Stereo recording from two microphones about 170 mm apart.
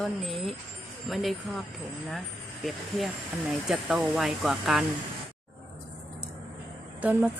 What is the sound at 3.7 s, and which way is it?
Speech, centre (ahead or behind).